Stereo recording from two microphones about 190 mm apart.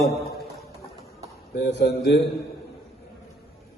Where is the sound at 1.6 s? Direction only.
60° left (ahead or behind).